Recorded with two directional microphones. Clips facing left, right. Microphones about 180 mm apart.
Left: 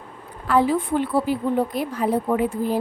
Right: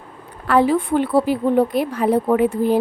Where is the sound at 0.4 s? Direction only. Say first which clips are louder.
Right 3 dB; 70° right (ahead or behind).